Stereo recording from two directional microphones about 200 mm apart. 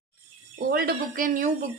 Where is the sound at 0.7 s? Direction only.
50° right (ahead or behind).